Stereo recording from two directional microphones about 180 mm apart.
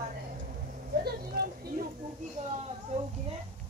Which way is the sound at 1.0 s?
60° right (ahead or behind).